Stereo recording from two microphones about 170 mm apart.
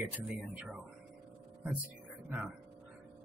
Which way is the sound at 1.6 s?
10° right (ahead or behind).